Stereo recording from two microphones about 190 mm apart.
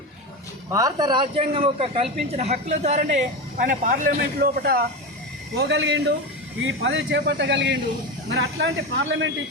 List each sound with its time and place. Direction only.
0.7 s a man's voice: 20° right (ahead or behind); by 4.8 s 50° right (ahead or behind)
5.5 s speech: 65° right (ahead or behind)
6.6 s speech: 80° right
8.4 s speech: 80° right